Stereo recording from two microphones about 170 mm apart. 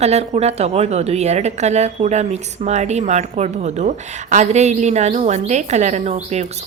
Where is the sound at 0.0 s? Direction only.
40° right (ahead or behind).